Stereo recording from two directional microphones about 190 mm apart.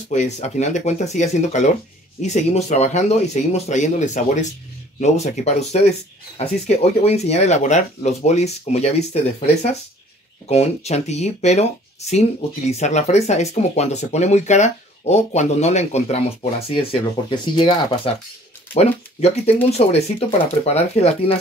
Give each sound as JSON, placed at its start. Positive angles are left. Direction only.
{"t": 0.1, "sound": "speech", "side_deg": 35}